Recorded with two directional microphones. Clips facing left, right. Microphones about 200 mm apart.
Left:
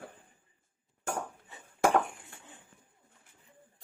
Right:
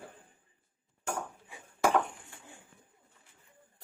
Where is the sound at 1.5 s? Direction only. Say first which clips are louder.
Right 2 dB; 10° right (ahead or behind).